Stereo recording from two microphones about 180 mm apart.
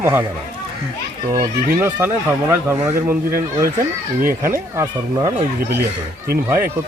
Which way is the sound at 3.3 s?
50° right (ahead or behind).